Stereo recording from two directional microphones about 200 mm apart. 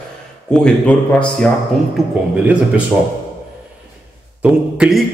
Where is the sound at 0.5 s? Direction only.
5° left (ahead or behind).